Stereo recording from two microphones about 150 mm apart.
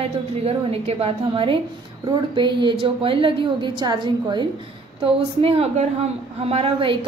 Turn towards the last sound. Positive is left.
turn(degrees=-40)  # may be behind; listen again after turning